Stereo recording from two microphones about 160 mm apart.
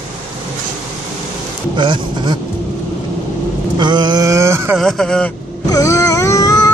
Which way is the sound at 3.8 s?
30° right (ahead or behind).